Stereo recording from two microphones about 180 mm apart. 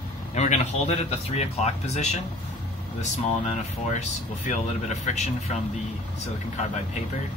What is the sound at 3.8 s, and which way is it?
Speech, 40° left (ahead or behind).